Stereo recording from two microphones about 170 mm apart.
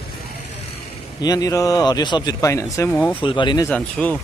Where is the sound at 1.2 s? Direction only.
20° left (ahead or behind).